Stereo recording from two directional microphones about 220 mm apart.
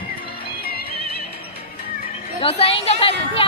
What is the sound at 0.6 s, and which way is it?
Music, 45° left (ahead or behind).